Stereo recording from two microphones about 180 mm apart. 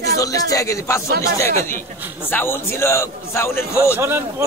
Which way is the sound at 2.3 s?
10° left (ahead or behind).